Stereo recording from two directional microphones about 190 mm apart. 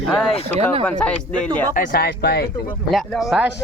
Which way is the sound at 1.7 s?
45° left (ahead or behind).